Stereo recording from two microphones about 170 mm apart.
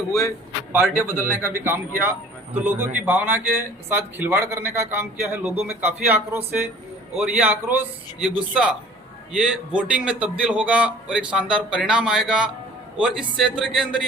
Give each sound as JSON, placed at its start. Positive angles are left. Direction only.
{"t": 0.1, "sound": "speech", "side_deg": 20}
{"t": 0.7, "sound": "a man's voice", "side_deg": -15}